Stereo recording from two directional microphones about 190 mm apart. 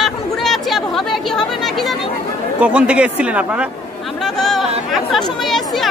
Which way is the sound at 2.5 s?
5° right (ahead or behind).